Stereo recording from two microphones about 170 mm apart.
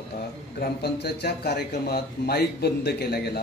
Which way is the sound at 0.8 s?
80° left.